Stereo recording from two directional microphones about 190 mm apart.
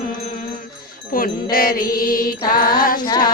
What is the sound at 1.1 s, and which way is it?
Music, 50° left (ahead or behind).